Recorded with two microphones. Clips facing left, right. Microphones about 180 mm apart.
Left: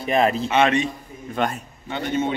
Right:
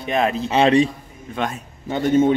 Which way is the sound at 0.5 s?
30° right (ahead or behind).